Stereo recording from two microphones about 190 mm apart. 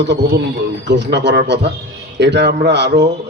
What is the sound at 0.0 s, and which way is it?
A man's voice, 65° right (ahead or behind).